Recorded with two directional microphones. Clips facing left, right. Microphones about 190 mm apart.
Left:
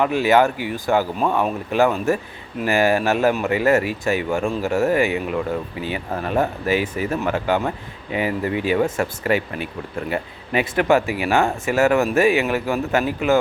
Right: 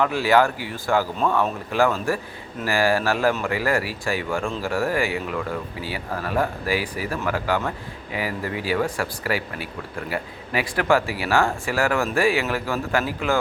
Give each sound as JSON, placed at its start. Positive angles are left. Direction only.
{"t": 0.0, "sound": "speech", "side_deg": 20}